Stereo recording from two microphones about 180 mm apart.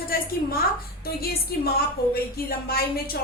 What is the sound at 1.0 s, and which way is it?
A woman's voice, 60° left (ahead or behind).